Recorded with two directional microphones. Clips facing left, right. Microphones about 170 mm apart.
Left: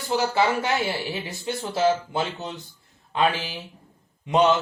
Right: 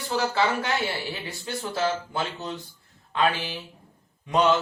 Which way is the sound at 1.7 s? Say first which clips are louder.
Left 5 dB; 20° left (ahead or behind).